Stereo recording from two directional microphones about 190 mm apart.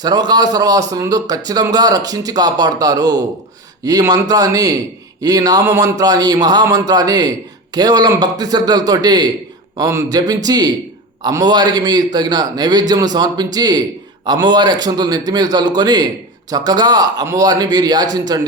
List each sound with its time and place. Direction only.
0.0 s speech: 20° right (ahead or behind)